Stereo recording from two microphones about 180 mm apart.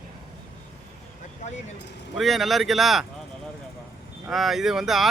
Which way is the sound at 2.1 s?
Centre (ahead or behind).